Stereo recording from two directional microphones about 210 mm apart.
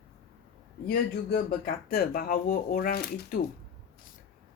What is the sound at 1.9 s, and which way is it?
Speech, 45° left (ahead or behind).